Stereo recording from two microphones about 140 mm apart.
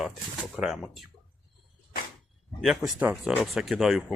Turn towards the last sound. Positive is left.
turn(degrees=0)  # may be behind; listen again after turning